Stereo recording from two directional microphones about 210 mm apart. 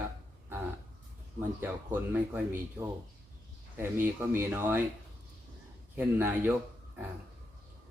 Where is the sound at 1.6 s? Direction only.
10° right (ahead or behind).